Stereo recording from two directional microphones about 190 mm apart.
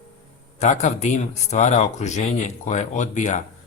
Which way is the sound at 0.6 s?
35° left (ahead or behind).